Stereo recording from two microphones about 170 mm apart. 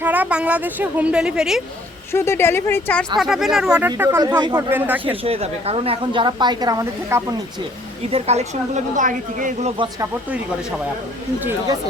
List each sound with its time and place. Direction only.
0.0 s a woman's voice: 10° right (ahead or behind)
2.1 s speech: 15° left (ahead or behind)
3.2 s speech: centre (ahead or behind)
3.8 s a woman's voice: 15° right (ahead or behind)
5.2 s a woman's voice: 35° right (ahead or behind); by 7.3 s 20° right (ahead or behind)
8.1 s a woman's voice: 40° right (ahead or behind)
9.7 s a woman's voice: 30° right (ahead or behind)